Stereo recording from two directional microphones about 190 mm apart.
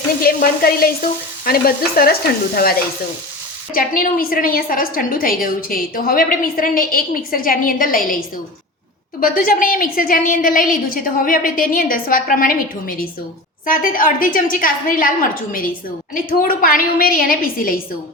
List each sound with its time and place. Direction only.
0.2 s a woman's voice: 50° left (ahead or behind)
3.8 s a woman's voice: 50° left (ahead or behind)
9.2 s a woman's voice: 45° left (ahead or behind)